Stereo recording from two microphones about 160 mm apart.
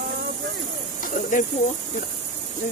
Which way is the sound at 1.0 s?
55° left (ahead or behind).